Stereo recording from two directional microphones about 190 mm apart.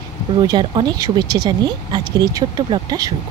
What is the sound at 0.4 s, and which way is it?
Speech, 25° right (ahead or behind).